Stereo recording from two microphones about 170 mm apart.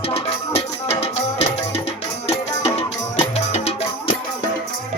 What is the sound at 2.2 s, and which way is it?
Music, 35° left (ahead or behind).